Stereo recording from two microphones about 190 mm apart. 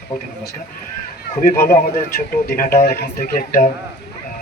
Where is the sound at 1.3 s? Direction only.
45° left (ahead or behind).